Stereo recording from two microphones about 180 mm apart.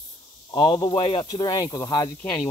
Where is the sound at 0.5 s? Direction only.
25° left (ahead or behind).